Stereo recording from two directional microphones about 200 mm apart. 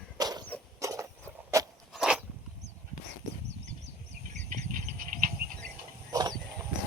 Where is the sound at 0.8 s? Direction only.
15° right (ahead or behind).